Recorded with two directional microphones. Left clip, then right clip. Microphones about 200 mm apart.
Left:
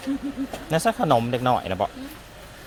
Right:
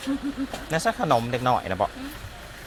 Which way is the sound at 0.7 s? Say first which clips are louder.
Left 2 dB; 35° left (ahead or behind).